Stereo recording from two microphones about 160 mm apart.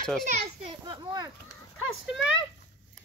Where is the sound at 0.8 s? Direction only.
25° right (ahead or behind).